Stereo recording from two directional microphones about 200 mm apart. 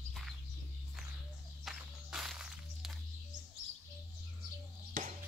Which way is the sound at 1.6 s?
Centre (ahead or behind).